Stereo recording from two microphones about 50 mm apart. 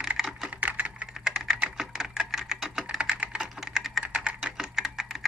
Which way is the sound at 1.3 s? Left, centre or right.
Centre.